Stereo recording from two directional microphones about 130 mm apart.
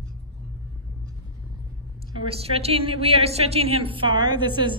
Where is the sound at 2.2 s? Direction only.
50° right (ahead or behind).